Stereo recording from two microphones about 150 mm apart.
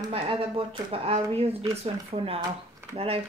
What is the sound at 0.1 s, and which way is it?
Speech, 40° right (ahead or behind).